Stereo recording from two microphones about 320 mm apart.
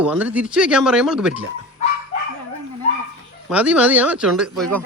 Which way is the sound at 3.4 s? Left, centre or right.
Centre.